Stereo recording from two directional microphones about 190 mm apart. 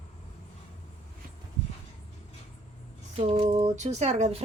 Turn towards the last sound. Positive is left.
turn(degrees=-35)  # may be behind; listen again after turning